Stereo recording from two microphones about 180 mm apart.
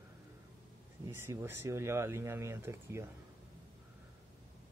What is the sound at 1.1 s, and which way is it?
Speech, 15° right (ahead or behind).